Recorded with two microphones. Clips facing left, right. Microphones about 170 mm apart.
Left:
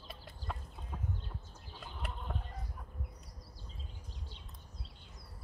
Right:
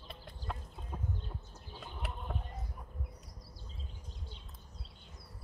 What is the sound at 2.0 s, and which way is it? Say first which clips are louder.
Chicken: right 1 dB; centre (ahead or behind).